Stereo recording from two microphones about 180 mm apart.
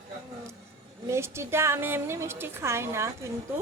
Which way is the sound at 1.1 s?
15° right (ahead or behind).